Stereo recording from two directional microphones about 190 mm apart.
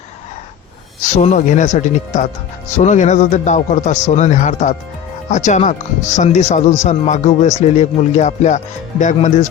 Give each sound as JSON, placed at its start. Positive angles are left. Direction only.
{"t": 1.1, "sound": "speech", "side_deg": 40}